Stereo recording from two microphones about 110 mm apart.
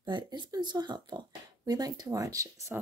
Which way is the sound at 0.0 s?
45° right (ahead or behind).